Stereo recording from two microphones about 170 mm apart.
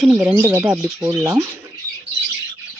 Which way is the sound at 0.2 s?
15° right (ahead or behind).